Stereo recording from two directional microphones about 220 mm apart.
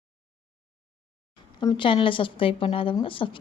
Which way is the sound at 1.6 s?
20° left (ahead or behind).